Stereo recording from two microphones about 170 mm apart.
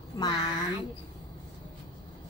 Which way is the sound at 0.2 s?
25° left (ahead or behind).